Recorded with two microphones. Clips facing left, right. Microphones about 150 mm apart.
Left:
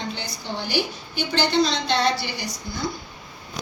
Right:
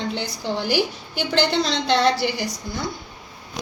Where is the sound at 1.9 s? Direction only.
90° right.